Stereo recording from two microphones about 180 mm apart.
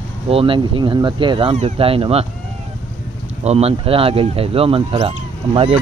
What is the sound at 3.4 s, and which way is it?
Speech, 35° right (ahead or behind).